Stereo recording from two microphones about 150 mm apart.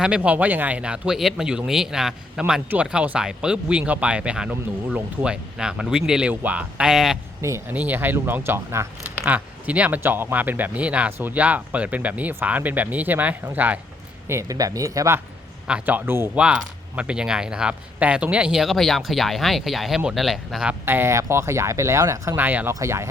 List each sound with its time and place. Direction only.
0.0 s speech: 10° right (ahead or behind)
7.4 s speech: 15° right (ahead or behind)
15.6 s speech: 10° right (ahead or behind)
20.8 s speech: 15° right (ahead or behind)